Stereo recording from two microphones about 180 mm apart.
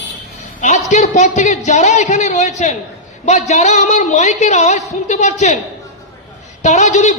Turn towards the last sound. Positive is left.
turn(degrees=40)  # may be behind; listen again after turning